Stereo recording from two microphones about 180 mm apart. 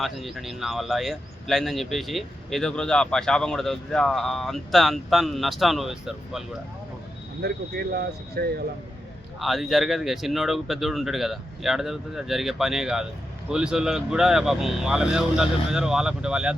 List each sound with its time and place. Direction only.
0.0 s speech: centre (ahead or behind)
7.9 s speech: 60° right (ahead or behind)
9.4 s speech: centre (ahead or behind)